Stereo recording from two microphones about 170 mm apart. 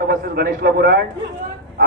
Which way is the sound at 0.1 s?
60° right (ahead or behind).